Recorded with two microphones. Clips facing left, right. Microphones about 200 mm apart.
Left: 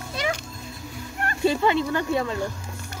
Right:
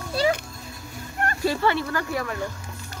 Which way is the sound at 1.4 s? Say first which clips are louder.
Left 3 dB; 20° left (ahead or behind).